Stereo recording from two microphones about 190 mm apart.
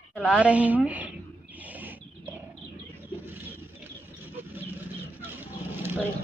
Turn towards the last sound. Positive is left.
turn(degrees=-10)  # may be behind; listen again after turning